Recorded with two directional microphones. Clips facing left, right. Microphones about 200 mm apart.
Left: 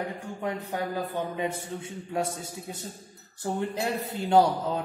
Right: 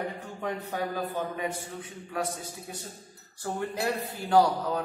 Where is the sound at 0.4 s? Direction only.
10° left (ahead or behind).